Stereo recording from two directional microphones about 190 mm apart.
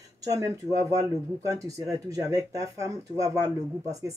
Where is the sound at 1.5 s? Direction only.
15° right (ahead or behind).